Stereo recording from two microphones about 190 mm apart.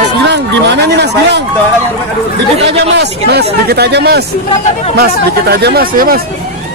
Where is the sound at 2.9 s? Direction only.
60° right (ahead or behind).